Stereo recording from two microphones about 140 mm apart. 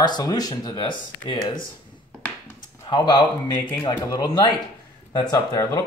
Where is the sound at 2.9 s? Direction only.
30° left (ahead or behind).